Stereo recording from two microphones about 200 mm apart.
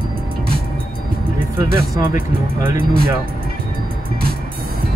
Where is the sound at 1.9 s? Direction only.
10° right (ahead or behind).